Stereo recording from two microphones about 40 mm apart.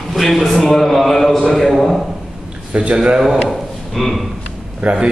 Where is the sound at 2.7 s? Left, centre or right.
Right.